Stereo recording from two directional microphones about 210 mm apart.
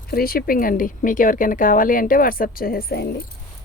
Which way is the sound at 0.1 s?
45° left (ahead or behind).